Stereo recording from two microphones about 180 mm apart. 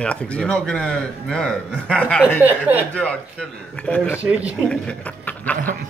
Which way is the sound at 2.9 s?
5° left (ahead or behind).